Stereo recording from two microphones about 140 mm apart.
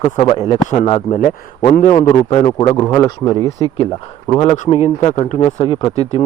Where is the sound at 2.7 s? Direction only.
25° left (ahead or behind).